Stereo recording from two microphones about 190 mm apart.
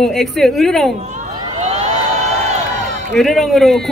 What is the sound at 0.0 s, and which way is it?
Speech, centre (ahead or behind).